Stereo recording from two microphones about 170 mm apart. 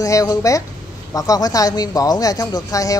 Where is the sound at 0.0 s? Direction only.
20° left (ahead or behind).